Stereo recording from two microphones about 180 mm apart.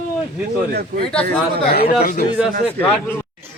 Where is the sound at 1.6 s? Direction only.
60° left (ahead or behind).